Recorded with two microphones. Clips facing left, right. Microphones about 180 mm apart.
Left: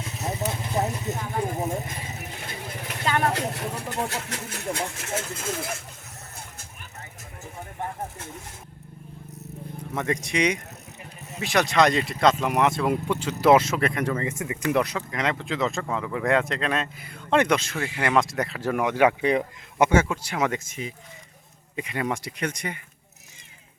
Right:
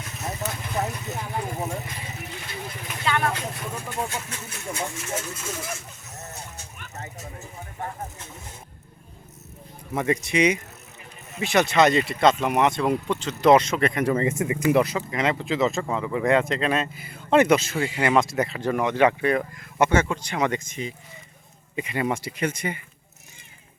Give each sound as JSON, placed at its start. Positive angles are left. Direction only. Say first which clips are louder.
{"t": 0.0, "sound": "a sound", "louder": "left 2 dB", "side_deg": 25}
{"t": 3.0, "sound": "vehicle", "louder": "even", "side_deg": 40}
{"t": 3.3, "sound": "speech", "louder": "left 3 dB", "side_deg": 70}
{"t": 9.9, "sound": "speech", "louder": "right 3 dB", "side_deg": -5}
{"t": 14.1, "sound": "speech", "louder": "right 5 dB", "side_deg": -25}
{"t": 14.6, "sound": "speech", "louder": "right 3 dB", "side_deg": -5}